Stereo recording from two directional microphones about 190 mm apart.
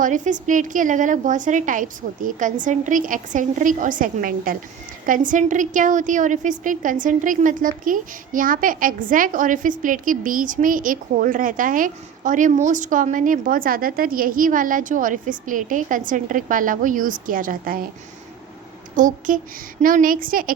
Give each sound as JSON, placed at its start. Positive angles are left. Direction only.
{"t": 0.0, "sound": "a woman's voice", "side_deg": -40}
{"t": 18.9, "sound": "a woman's voice", "side_deg": -45}